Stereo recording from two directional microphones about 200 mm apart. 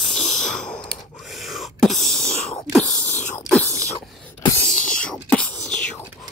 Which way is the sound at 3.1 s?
40° left (ahead or behind).